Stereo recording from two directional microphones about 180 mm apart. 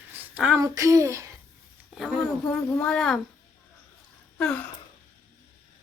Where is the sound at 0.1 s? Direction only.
10° right (ahead or behind).